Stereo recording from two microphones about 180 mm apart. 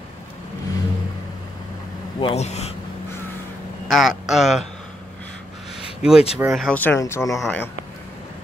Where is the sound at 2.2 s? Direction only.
35° left (ahead or behind).